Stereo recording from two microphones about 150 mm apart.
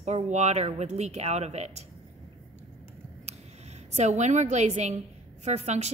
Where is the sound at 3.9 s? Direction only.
50° right (ahead or behind).